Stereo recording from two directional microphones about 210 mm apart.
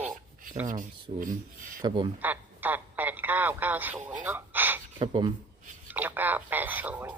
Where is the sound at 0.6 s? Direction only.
40° right (ahead or behind).